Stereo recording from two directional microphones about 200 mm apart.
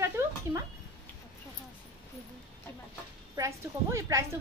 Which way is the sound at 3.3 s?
15° right (ahead or behind).